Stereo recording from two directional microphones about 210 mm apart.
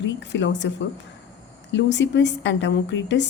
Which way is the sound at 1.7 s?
55° left (ahead or behind).